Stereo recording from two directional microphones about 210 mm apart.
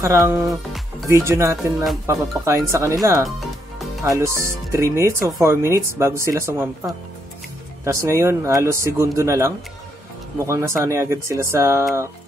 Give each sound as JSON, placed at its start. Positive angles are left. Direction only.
{"t": 0.0, "sound": "speech", "side_deg": -15}
{"t": 7.8, "sound": "speech", "side_deg": -15}